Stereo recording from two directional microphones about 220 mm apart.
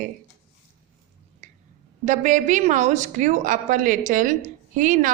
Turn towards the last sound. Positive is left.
turn(degrees=-35)  # may be behind; listen again after turning